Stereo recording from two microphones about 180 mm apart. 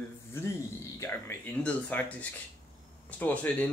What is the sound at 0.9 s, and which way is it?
Speech, 10° left (ahead or behind).